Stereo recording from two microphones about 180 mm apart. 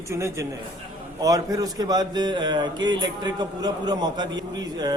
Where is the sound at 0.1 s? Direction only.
15° right (ahead or behind).